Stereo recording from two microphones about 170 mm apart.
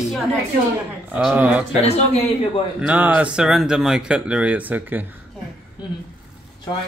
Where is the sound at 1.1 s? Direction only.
10° right (ahead or behind).